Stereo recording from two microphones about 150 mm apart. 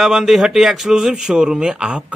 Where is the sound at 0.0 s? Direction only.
Centre (ahead or behind).